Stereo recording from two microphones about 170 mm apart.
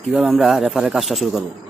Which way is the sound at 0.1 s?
Centre (ahead or behind).